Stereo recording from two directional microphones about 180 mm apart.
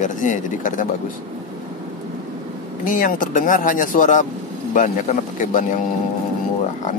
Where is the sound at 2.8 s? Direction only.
45° left (ahead or behind).